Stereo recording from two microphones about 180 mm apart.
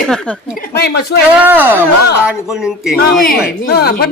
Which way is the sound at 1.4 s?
10° right (ahead or behind).